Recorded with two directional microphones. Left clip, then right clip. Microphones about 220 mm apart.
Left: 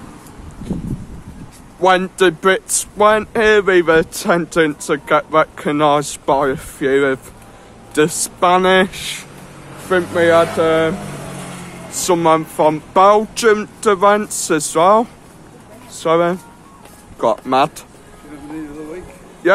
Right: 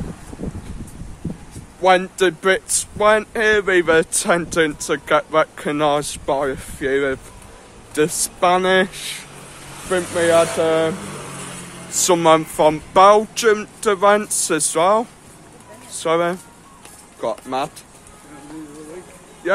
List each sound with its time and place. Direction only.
1.8 s speech: 15° left (ahead or behind)
17.2 s speech: 20° left (ahead or behind)